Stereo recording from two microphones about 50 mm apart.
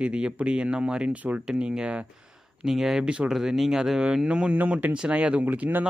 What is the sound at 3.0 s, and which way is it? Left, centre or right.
Speech, right.